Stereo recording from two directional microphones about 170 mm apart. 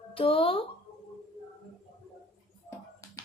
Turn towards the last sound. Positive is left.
turn(degrees=20)  # may be behind; listen again after turning